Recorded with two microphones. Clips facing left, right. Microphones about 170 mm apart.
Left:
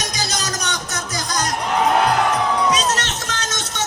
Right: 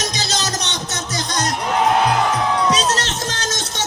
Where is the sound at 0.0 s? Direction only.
25° right (ahead or behind).